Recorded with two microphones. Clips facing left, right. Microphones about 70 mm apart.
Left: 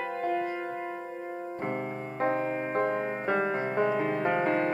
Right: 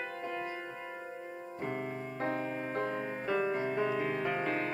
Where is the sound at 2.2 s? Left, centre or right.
Left.